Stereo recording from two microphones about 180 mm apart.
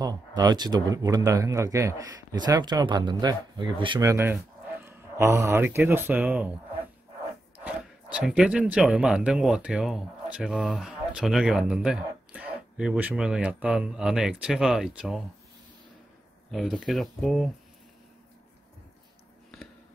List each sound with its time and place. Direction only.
0.0 s speech: 20° right (ahead or behind); by 6.5 s 5° right (ahead or behind)
7.6 s speech: 5° right (ahead or behind)
16.4 s speech: centre (ahead or behind)